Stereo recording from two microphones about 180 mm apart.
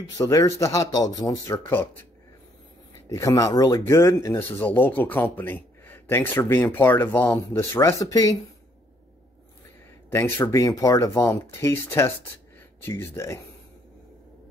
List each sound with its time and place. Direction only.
0.2 s speech: 20° left (ahead or behind)
3.1 s speech: 20° left (ahead or behind)
10.1 s speech: 10° left (ahead or behind)